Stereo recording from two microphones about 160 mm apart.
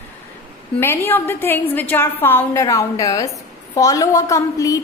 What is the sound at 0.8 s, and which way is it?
A woman's voice, 15° left (ahead or behind).